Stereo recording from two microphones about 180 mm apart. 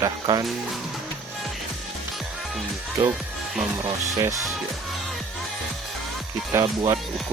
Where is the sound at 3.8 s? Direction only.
15° right (ahead or behind).